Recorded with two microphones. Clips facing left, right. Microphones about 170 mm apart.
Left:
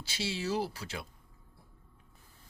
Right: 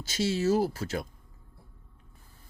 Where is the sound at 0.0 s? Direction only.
45° right (ahead or behind).